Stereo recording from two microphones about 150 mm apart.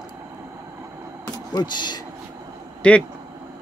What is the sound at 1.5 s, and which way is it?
Speech, 30° left (ahead or behind).